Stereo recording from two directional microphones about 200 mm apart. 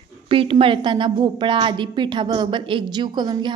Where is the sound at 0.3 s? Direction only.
25° right (ahead or behind).